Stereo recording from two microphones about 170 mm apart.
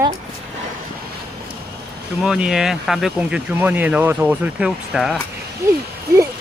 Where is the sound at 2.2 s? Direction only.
5° right (ahead or behind).